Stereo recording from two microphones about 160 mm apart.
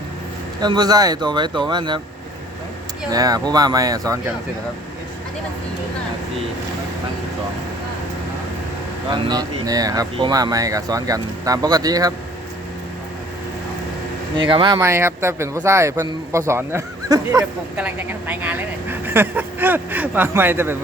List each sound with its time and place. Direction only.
0.6 s speech: 25° right (ahead or behind)
3.1 s speech: 25° right (ahead or behind)
9.0 s speech: 30° right (ahead or behind)
14.3 s speech: 30° right (ahead or behind)
14.8 s speech: 15° right (ahead or behind)